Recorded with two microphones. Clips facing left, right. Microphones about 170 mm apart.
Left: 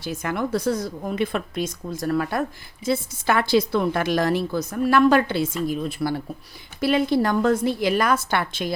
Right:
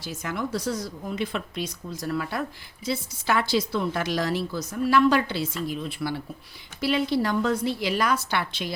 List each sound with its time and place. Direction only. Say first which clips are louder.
0.0 s a woman's voice: left 5 dB; 60° left (ahead or behind)